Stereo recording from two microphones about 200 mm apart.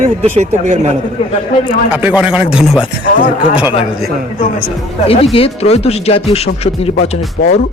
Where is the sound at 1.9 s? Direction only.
5° right (ahead or behind).